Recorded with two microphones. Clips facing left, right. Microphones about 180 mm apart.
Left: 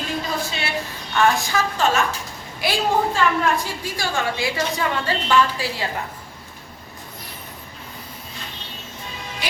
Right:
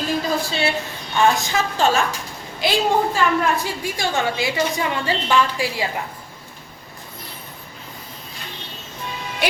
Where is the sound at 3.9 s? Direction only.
20° right (ahead or behind).